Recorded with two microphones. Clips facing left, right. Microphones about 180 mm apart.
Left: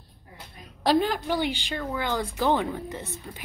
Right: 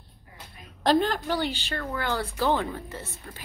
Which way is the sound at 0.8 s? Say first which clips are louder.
Even; 10° left (ahead or behind).